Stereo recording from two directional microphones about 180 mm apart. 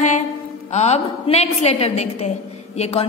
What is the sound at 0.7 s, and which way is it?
A woman's voice, 40° left (ahead or behind).